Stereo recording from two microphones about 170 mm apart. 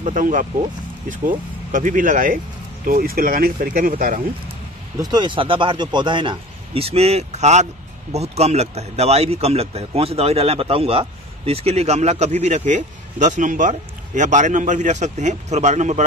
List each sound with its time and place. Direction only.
0.0 s speech: 50° right (ahead or behind)
5.0 s speech: 25° right (ahead or behind); by 16.0 s 45° right (ahead or behind)